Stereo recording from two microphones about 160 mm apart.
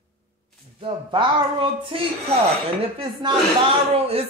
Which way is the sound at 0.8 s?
30° right (ahead or behind).